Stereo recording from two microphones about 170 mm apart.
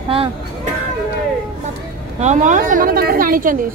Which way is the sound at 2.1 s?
45° right (ahead or behind).